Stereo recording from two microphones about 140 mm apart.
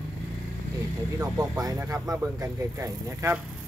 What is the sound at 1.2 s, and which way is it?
Speech, 25° right (ahead or behind).